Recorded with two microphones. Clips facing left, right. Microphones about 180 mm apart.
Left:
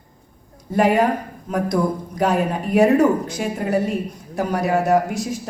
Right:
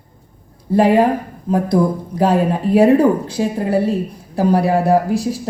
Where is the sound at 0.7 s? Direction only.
30° right (ahead or behind).